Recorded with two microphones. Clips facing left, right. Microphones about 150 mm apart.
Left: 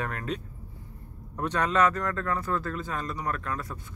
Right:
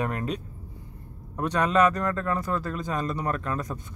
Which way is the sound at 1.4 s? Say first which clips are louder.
Right 3 dB; 10° right (ahead or behind).